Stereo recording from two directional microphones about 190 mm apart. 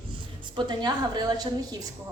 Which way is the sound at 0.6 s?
20° right (ahead or behind).